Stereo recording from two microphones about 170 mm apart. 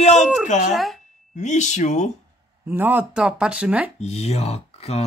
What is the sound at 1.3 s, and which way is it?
Speech, 45° left (ahead or behind).